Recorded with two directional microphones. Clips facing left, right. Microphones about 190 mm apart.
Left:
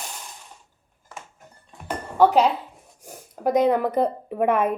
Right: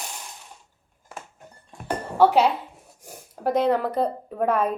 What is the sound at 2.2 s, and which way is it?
Speech, 5° right (ahead or behind).